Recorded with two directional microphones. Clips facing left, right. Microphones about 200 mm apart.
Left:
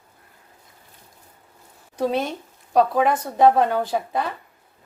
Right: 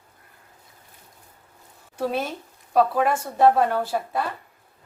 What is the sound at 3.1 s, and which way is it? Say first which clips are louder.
A woman's voice: left 1 dB; 15° left (ahead or behind).